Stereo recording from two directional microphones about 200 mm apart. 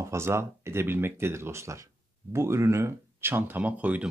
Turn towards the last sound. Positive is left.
turn(degrees=-5)  # may be behind; listen again after turning